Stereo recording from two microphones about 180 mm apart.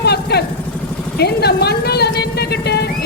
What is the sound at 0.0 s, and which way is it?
Vehicle, 65° left (ahead or behind).